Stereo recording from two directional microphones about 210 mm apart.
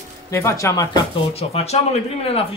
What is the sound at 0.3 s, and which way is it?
Speech, 15° left (ahead or behind).